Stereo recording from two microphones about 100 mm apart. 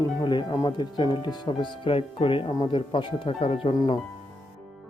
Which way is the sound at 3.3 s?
90° left.